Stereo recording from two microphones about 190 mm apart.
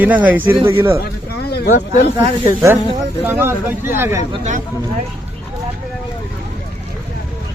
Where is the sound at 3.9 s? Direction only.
10° right (ahead or behind).